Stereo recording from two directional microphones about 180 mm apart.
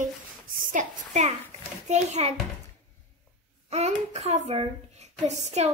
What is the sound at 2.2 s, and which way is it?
Speech, 35° right (ahead or behind).